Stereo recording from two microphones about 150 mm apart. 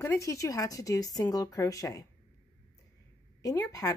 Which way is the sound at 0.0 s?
20° left (ahead or behind).